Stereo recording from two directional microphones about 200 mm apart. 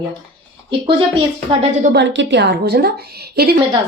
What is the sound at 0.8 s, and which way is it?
Speech, 25° right (ahead or behind).